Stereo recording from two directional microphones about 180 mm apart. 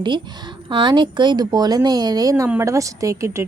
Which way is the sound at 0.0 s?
25° right (ahead or behind).